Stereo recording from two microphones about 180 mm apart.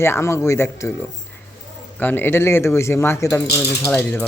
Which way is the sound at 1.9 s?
10° left (ahead or behind).